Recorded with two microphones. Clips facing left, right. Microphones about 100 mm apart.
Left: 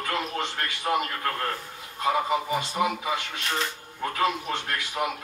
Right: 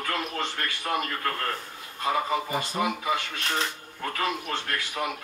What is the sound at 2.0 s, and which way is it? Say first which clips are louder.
A man's voice: left 2 dB; 20° left (ahead or behind).